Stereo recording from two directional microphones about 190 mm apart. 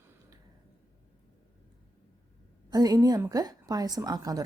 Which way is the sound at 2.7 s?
20° right (ahead or behind).